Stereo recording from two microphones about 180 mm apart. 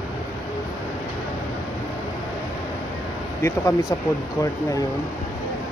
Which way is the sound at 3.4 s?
15° left (ahead or behind).